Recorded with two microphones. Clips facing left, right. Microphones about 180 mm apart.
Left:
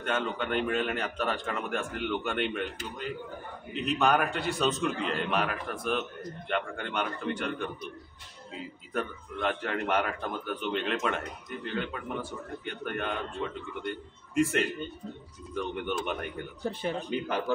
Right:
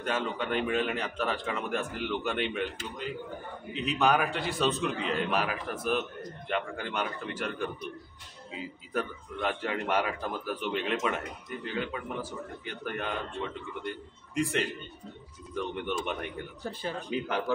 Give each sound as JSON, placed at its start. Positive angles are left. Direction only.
{"t": 0.0, "sound": "a man's voice", "side_deg": 0}
{"t": 16.6, "sound": "speech", "side_deg": 20}
{"t": 17.1, "sound": "a man's voice", "side_deg": 0}